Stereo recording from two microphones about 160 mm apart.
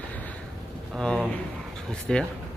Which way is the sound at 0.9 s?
5° left (ahead or behind).